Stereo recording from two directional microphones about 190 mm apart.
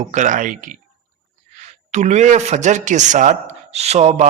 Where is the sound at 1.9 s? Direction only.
35° right (ahead or behind).